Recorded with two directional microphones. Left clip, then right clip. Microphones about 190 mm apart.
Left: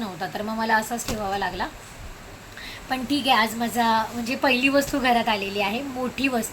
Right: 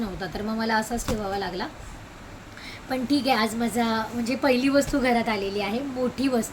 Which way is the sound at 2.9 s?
5° right (ahead or behind).